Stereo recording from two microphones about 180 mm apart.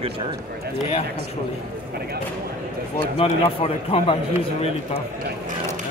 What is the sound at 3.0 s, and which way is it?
Speech, 30° left (ahead or behind).